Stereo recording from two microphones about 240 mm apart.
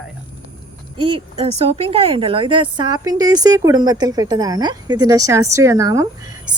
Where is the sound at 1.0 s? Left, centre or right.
Right.